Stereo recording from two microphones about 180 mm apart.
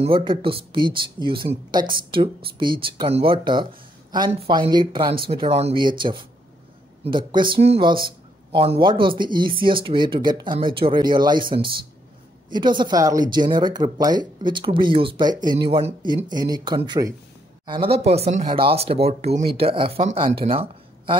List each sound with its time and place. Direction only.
0.0 s speech: 30° right (ahead or behind)
12.4 s speech: 25° right (ahead or behind)